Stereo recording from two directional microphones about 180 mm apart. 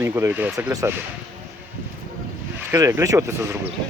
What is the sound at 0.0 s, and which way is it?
Speech, 15° right (ahead or behind).